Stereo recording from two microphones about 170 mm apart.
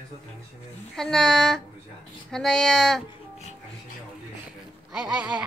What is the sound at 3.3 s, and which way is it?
Music, 40° left (ahead or behind).